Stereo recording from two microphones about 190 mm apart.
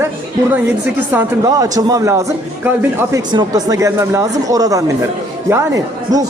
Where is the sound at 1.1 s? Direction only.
20° right (ahead or behind).